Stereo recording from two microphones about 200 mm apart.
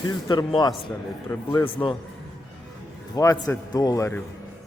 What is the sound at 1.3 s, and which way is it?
Speech, 10° left (ahead or behind).